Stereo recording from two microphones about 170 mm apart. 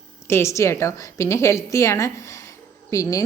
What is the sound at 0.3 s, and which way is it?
A woman's voice, 15° left (ahead or behind).